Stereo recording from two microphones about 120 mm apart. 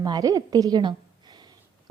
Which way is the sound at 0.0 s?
30° right (ahead or behind).